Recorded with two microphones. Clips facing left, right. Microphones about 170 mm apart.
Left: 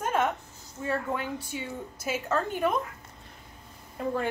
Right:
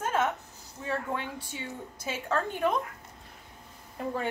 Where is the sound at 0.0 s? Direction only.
10° left (ahead or behind).